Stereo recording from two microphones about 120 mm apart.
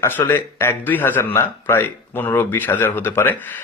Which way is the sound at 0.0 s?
20° left (ahead or behind).